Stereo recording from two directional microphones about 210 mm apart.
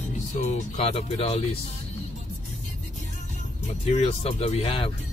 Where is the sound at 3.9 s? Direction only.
30° left (ahead or behind).